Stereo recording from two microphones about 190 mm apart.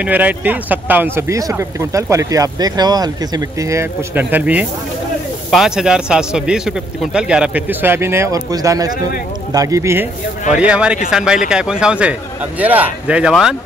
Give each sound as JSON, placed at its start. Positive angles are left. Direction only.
{"t": 0.0, "sound": "a man's voice", "side_deg": -10}